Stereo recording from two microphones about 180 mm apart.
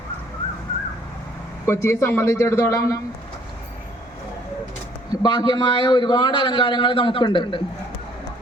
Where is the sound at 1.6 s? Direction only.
15° left (ahead or behind).